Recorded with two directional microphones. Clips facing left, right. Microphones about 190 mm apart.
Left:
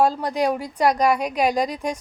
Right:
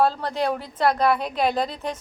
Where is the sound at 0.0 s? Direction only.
15° left (ahead or behind).